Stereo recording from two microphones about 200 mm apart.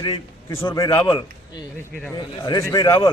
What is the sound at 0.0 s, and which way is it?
A man's voice, 20° left (ahead or behind).